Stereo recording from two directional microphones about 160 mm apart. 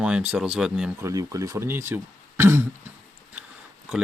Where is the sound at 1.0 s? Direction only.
20° right (ahead or behind).